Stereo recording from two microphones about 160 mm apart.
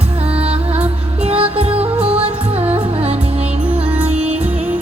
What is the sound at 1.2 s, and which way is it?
Music, 40° right (ahead or behind).